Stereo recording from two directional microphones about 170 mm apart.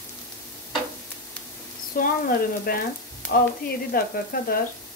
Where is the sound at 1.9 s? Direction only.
55° left (ahead or behind).